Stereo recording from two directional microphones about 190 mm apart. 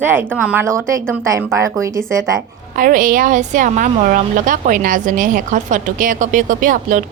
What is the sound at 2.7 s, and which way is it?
A woman's voice, 45° right (ahead or behind).